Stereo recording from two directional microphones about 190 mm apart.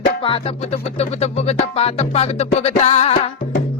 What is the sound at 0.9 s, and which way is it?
Music, 35° left (ahead or behind).